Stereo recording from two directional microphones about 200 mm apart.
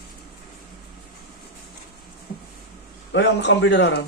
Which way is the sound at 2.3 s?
45° left (ahead or behind).